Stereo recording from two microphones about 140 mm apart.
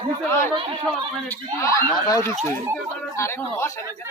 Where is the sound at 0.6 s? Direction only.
40° right (ahead or behind).